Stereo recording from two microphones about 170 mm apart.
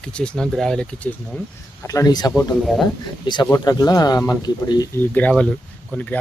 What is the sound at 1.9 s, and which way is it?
Speech, 20° left (ahead or behind).